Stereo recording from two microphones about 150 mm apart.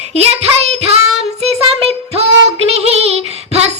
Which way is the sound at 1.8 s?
40° right (ahead or behind).